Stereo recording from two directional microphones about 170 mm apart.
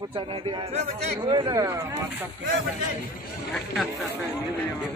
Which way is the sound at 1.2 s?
25° right (ahead or behind).